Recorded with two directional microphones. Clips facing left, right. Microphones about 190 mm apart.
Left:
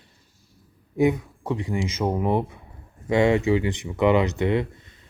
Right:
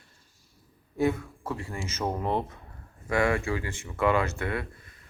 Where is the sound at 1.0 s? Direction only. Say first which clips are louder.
Left 5 dB; 15° left (ahead or behind).